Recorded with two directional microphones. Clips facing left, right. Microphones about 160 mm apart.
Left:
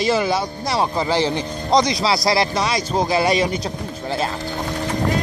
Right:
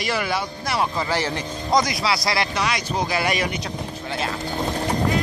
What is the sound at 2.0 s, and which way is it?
Speech, 35° left (ahead or behind).